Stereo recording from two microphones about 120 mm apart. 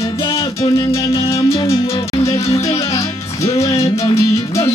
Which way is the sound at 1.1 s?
30° left (ahead or behind).